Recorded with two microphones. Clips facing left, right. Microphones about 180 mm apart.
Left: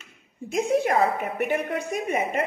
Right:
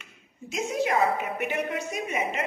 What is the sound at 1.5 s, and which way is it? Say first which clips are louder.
Speech: left 3 dB; 55° left (ahead or behind).